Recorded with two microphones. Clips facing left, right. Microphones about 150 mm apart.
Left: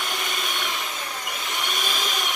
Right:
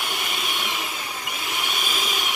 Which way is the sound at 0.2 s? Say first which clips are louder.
Even; 5° right (ahead or behind).